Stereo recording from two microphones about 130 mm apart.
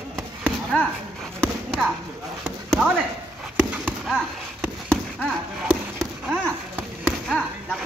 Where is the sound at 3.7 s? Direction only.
Centre (ahead or behind).